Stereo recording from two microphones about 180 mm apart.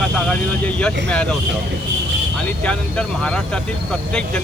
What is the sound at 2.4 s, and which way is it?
Speech, 5° left (ahead or behind).